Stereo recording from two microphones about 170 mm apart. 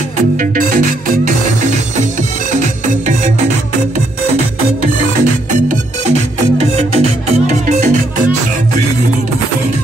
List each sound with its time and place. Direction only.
0.4 s music: 50° right (ahead or behind)
5.2 s music: 50° right (ahead or behind)